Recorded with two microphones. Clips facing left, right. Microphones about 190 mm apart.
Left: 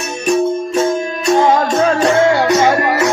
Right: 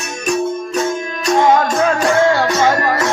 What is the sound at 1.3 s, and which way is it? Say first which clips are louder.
Music: left 1 dB; 30° left (ahead or behind).